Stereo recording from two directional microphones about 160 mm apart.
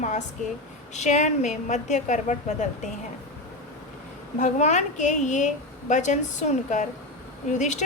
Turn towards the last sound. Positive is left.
turn(degrees=50)  # may be behind; listen again after turning